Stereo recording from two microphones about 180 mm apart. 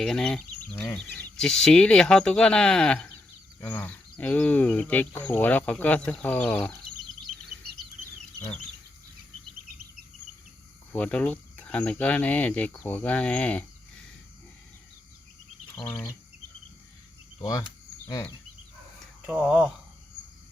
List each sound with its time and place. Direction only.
0.0 s speech: 5° left (ahead or behind)
10.9 s speech: 5° left (ahead or behind)
15.9 s speech: 5° left (ahead or behind)
18.0 s speech: 15° left (ahead or behind)
19.2 s speech: 5° right (ahead or behind)